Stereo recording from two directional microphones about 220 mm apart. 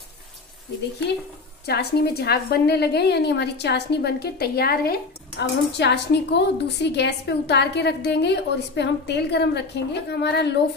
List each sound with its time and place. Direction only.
1.7 s a woman's voice: 45° left (ahead or behind)